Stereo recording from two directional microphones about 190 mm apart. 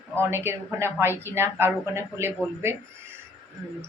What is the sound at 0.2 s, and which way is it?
Speech, 15° right (ahead or behind).